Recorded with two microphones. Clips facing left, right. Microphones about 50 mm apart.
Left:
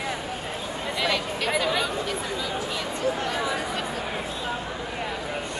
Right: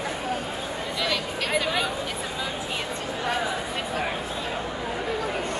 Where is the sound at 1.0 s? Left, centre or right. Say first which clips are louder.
Left 2 dB; centre.